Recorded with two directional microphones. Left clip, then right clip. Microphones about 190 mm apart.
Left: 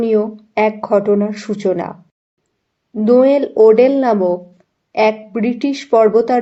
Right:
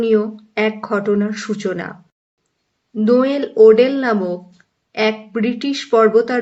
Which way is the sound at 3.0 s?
15° left (ahead or behind).